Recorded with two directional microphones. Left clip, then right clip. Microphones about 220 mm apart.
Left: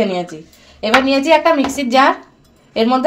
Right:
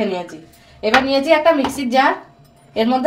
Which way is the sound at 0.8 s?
40° left (ahead or behind).